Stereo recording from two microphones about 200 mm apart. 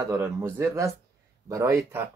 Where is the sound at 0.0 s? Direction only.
15° right (ahead or behind).